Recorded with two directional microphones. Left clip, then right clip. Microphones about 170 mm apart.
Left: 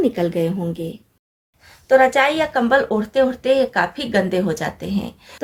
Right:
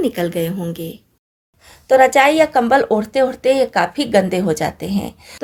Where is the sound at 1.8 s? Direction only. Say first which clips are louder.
Right 3 dB; 45° right (ahead or behind).